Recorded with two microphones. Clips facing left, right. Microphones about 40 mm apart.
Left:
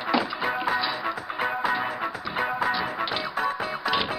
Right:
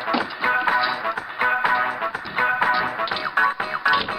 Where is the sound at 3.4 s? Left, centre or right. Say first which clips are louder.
Right 9 dB; right.